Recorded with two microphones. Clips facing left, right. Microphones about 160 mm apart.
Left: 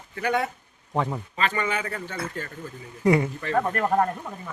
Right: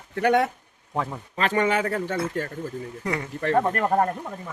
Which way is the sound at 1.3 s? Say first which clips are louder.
Right 5 dB; 70° right (ahead or behind).